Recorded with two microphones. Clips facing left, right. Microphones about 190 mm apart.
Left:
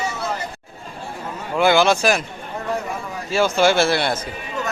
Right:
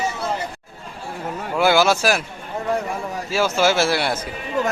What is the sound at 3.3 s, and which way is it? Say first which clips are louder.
Speech: left 2 dB; 5° right (ahead or behind).